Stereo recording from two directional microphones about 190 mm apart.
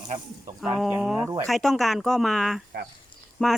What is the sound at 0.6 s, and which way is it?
Speech, 5° right (ahead or behind).